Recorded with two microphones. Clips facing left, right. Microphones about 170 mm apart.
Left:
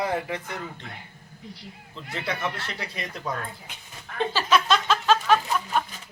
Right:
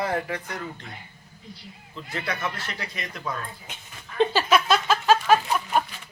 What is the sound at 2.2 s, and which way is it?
Speech, 25° left (ahead or behind).